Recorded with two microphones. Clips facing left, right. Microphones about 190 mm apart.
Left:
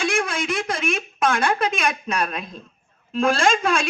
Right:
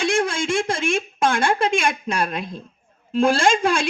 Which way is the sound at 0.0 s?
25° right (ahead or behind).